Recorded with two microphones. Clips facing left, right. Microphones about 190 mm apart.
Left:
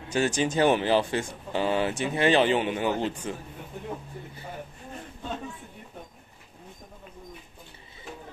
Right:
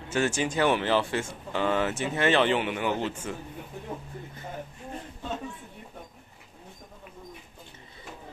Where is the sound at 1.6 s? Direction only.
30° left (ahead or behind).